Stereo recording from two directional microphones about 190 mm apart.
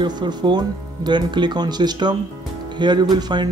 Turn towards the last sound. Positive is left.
turn(degrees=-20)  # may be behind; listen again after turning